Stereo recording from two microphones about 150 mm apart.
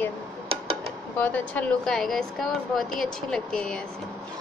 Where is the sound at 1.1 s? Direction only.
10° left (ahead or behind).